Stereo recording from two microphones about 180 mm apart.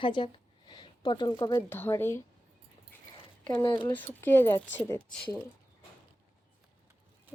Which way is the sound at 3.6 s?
25° left (ahead or behind).